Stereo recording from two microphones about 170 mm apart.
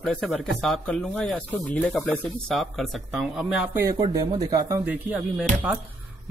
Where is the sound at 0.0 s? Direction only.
5° left (ahead or behind).